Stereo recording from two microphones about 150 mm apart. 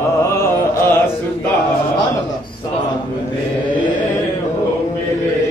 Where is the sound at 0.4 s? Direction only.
15° left (ahead or behind).